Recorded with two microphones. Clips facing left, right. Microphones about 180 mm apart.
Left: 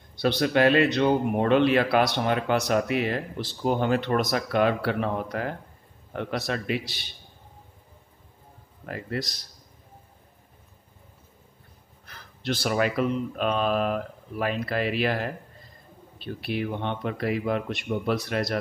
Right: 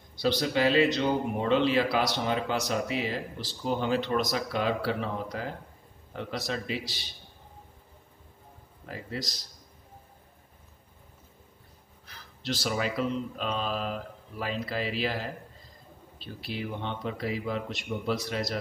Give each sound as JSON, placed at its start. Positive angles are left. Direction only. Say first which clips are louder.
{"t": 0.1, "sound": "speech", "louder": "left 4 dB", "side_deg": 60}
{"t": 8.8, "sound": "speech", "louder": "left 5 dB", "side_deg": 60}
{"t": 12.1, "sound": "speech", "louder": "left 4 dB", "side_deg": 55}